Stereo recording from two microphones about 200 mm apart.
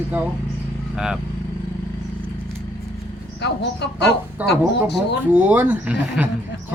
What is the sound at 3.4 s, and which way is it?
Speech, 60° left (ahead or behind).